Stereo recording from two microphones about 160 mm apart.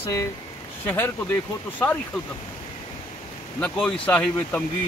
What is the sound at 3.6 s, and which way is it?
Speech, 5° left (ahead or behind).